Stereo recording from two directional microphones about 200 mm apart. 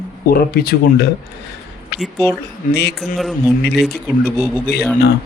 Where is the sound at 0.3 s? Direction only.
50° left (ahead or behind).